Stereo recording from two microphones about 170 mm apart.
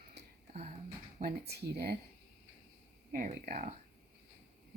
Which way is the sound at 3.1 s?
55° right (ahead or behind).